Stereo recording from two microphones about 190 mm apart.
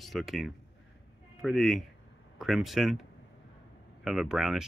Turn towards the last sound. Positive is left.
turn(degrees=-5)  # may be behind; listen again after turning